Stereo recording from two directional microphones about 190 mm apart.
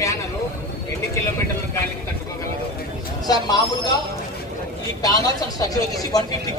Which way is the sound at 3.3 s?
20° left (ahead or behind).